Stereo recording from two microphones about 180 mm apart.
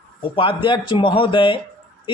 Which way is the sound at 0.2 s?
30° left (ahead or behind).